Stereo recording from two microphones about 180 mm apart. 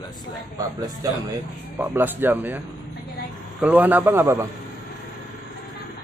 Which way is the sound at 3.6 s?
10° right (ahead or behind).